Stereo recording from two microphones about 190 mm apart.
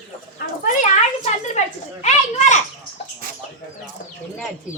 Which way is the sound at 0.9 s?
35° left (ahead or behind).